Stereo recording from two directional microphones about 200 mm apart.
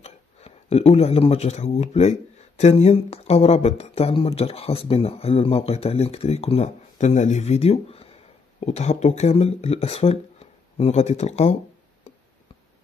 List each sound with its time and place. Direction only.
0.0 s speech: 30° left (ahead or behind)